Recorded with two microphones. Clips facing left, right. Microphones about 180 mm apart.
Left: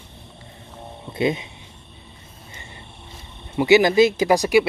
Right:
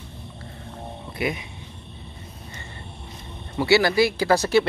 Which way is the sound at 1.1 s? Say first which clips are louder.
Left 6 dB; 25° left (ahead or behind).